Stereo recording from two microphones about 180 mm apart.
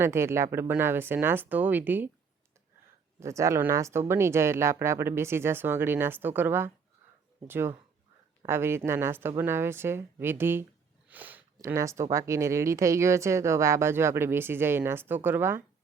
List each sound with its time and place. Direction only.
0.0 s speech: 15° right (ahead or behind)
3.2 s speech: 15° right (ahead or behind)